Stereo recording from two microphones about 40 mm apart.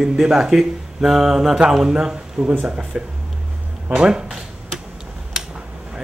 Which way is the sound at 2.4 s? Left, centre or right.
Right.